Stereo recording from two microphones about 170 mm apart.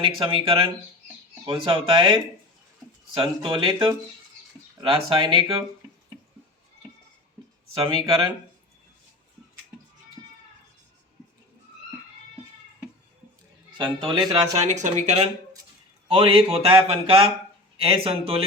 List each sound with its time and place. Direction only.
0.0 s speech: 30° right (ahead or behind)
7.7 s speech: 30° right (ahead or behind)
13.7 s speech: 30° right (ahead or behind)
14.6 s speech: 45° right (ahead or behind)